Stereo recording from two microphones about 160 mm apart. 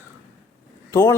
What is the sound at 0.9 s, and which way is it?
Speech, 15° left (ahead or behind).